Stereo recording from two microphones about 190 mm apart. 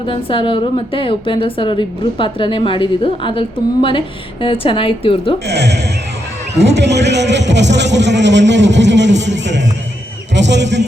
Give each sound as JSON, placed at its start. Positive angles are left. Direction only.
{"t": 0.0, "sound": "a woman's voice", "side_deg": 25}
{"t": 5.5, "sound": "a man's voice", "side_deg": -60}